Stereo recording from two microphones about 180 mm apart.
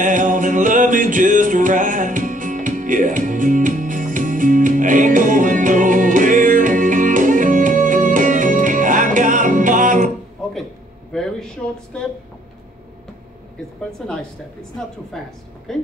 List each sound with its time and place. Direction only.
0.0 s music: 45° right (ahead or behind)
11.9 s a woman's voice: 5° left (ahead or behind)
14.0 s a woman's voice: centre (ahead or behind)